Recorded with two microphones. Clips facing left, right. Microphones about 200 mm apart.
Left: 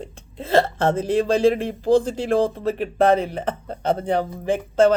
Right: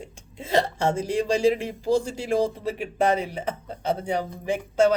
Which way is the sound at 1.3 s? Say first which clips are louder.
Left 1 dB; 55° left (ahead or behind).